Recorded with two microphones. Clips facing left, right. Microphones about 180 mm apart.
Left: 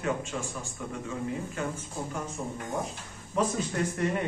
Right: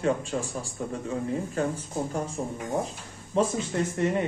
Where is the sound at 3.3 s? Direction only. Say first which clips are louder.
Right 3 dB; 30° right (ahead or behind).